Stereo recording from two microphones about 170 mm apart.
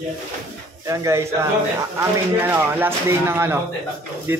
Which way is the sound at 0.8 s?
20° right (ahead or behind).